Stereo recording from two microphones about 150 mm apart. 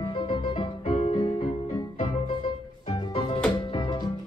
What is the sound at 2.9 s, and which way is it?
Music, 35° left (ahead or behind).